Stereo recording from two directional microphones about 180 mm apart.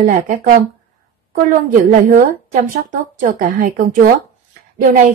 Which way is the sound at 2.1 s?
45° right (ahead or behind).